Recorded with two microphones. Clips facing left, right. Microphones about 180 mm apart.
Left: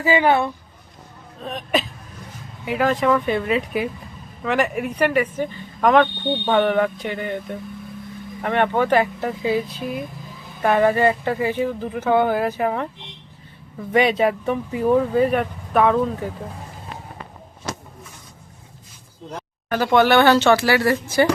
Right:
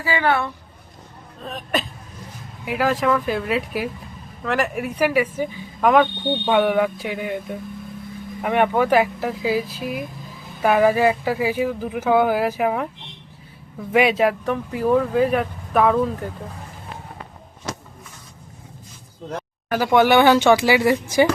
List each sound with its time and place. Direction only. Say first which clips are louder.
0.0 s speech: left 4 dB; 20° left (ahead or behind)
1.4 s speech: left 2 dB; centre (ahead or behind)
13.9 s speech: even; 5° right (ahead or behind)
19.8 s speech: even; 10° right (ahead or behind)